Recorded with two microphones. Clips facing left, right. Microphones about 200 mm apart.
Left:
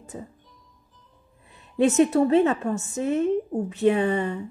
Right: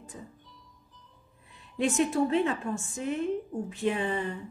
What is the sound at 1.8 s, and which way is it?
A woman's voice, 40° left (ahead or behind).